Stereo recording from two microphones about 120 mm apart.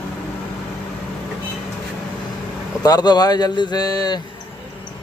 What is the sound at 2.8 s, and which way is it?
A man's voice, 35° left (ahead or behind).